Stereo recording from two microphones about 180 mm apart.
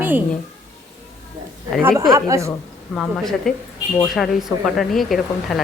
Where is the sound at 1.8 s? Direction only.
10° right (ahead or behind).